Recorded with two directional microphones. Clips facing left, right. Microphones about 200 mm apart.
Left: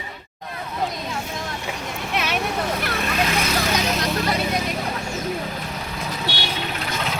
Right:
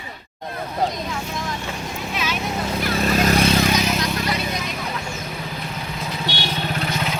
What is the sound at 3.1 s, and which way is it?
Vehicle, 40° right (ahead or behind).